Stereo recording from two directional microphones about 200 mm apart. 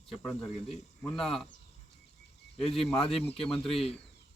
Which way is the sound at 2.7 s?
Centre (ahead or behind).